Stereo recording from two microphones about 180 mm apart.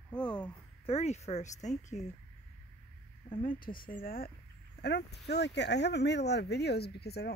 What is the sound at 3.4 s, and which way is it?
Speech, 50° left (ahead or behind).